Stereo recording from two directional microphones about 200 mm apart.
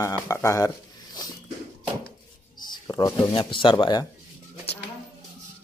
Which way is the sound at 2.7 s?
20° left (ahead or behind).